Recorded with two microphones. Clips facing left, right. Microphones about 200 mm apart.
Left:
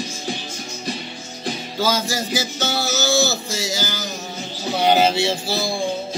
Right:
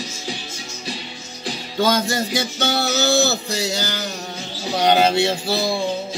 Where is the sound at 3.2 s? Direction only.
65° right (ahead or behind).